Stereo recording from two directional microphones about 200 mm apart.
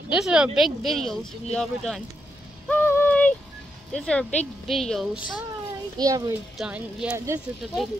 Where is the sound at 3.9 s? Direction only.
5° left (ahead or behind).